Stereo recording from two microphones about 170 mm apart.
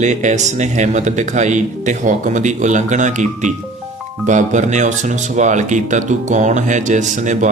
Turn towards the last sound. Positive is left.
turn(degrees=-45)  # may be behind; listen again after turning